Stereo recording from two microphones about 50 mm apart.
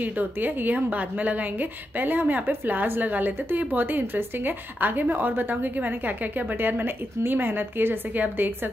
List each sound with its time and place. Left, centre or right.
0.0 s a woman's voice: right